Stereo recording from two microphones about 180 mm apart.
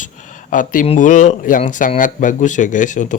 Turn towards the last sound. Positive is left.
turn(degrees=45)  # may be behind; listen again after turning